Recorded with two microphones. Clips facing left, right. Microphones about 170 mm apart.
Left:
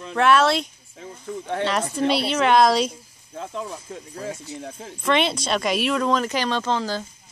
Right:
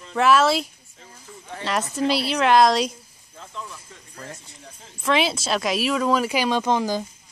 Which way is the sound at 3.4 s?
55° left (ahead or behind).